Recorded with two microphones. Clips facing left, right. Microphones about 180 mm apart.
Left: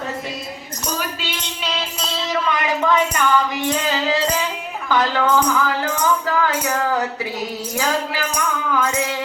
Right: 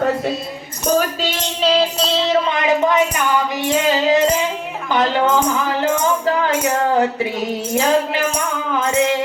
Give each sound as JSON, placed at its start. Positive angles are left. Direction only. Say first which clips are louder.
{"t": 0.9, "sound": "speech", "louder": "right 9 dB", "side_deg": -45}